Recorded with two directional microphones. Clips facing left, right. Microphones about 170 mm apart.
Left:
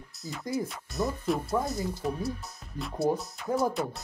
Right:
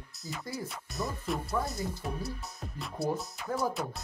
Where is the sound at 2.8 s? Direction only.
Centre (ahead or behind).